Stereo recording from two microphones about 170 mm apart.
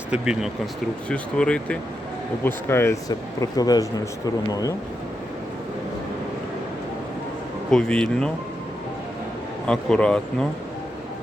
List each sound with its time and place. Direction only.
0.1 s speech: 5° right (ahead or behind); by 4.0 s 20° left (ahead or behind)
7.7 s speech: 5° left (ahead or behind)
9.6 s speech: 5° left (ahead or behind)